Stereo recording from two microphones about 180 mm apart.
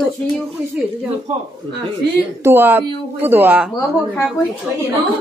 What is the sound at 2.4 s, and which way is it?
Speech, 10° right (ahead or behind).